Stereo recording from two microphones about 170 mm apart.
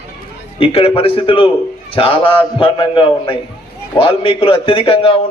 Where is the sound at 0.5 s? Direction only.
35° left (ahead or behind).